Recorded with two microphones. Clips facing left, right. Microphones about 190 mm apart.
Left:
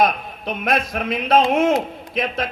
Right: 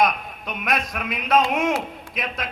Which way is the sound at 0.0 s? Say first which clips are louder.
Left 3 dB; 30° left (ahead or behind).